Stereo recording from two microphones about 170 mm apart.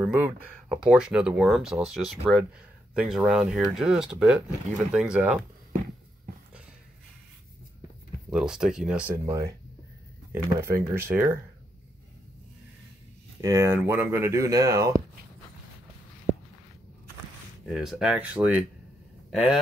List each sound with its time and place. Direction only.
0.0 s speech: 10° right (ahead or behind)
8.3 s speech: 5° right (ahead or behind)
9.1 s speech: 15° right (ahead or behind)
13.4 s speech: 15° right (ahead or behind)
17.6 s speech: centre (ahead or behind)